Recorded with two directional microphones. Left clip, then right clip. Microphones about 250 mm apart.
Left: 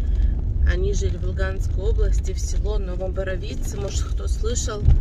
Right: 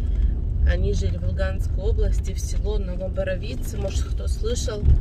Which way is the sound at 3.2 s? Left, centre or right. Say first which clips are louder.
Right 2 dB; centre.